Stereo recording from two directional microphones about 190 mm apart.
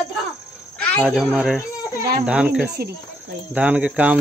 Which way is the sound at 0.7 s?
5° left (ahead or behind).